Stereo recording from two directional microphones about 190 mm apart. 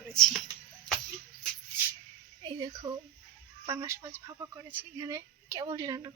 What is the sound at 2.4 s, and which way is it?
A woman's voice, 20° right (ahead or behind).